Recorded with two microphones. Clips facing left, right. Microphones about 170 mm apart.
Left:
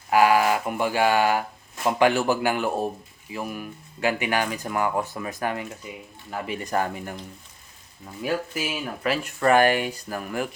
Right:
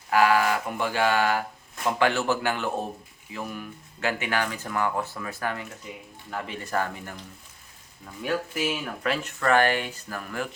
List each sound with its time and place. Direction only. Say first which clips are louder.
0.1 s speech: left 2 dB; 15° left (ahead or behind)
8.2 s speech: even; 5° left (ahead or behind)